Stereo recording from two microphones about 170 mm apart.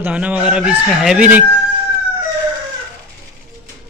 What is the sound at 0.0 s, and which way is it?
Speech, 10° right (ahead or behind).